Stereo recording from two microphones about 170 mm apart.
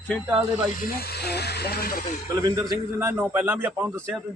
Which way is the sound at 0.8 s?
70° left (ahead or behind).